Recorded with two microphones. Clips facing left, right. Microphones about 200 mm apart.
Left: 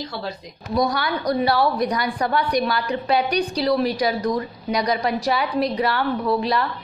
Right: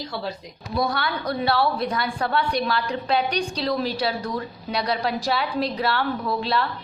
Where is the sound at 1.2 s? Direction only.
10° left (ahead or behind).